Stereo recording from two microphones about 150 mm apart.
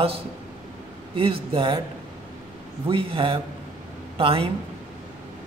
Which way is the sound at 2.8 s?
35° right (ahead or behind).